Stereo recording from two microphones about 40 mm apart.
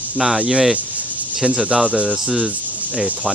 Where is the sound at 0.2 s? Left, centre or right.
Centre.